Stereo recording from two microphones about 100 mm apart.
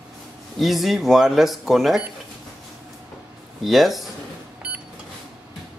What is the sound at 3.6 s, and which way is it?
Speech, centre (ahead or behind).